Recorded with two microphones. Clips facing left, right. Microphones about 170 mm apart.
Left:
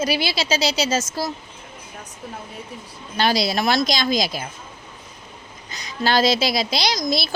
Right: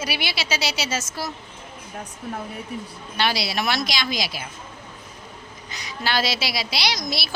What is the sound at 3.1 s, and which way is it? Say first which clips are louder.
Speech: left 4 dB; 45° left (ahead or behind).